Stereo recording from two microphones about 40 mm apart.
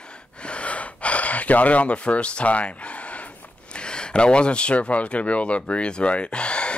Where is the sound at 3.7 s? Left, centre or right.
Left.